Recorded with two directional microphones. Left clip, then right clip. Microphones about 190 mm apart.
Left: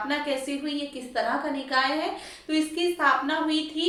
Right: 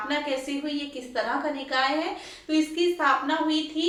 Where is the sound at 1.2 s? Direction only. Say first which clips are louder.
Left 1 dB; 15° left (ahead or behind).